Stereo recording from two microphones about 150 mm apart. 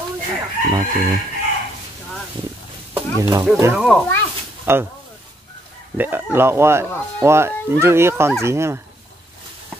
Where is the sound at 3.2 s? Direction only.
25° right (ahead or behind).